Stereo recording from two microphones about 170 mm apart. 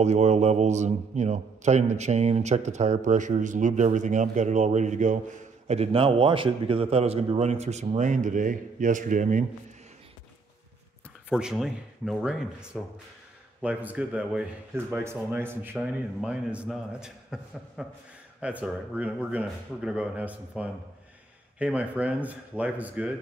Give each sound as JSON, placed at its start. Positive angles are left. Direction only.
{"t": 0.0, "sound": "a man's voice", "side_deg": -40}
{"t": 5.7, "sound": "a man's voice", "side_deg": -35}
{"t": 11.2, "sound": "a man's voice", "side_deg": -5}